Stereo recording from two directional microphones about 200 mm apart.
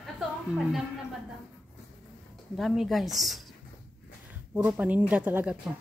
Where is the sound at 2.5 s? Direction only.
Centre (ahead or behind).